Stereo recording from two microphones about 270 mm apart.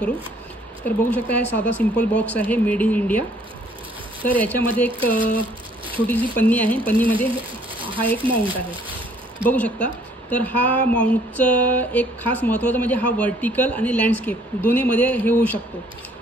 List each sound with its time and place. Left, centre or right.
0.8 s a woman's voice: centre
5.2 s a sound: centre
6.3 s a woman's voice: centre
8.2 s speech: centre
9.5 s a woman's voice: centre